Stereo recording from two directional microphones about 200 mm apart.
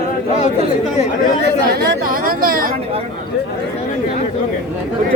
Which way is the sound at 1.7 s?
50° right (ahead or behind).